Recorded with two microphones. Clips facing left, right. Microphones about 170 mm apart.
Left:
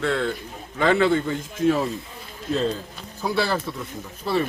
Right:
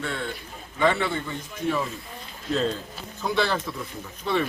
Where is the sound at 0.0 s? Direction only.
90° left.